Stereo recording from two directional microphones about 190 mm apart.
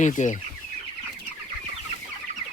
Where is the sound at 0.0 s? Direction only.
40° left (ahead or behind).